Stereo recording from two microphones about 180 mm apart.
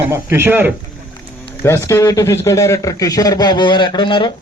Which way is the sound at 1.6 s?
15° left (ahead or behind).